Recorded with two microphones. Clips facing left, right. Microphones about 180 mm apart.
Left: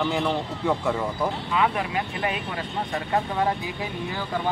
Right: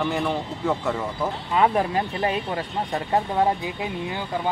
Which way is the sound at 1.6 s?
35° right (ahead or behind).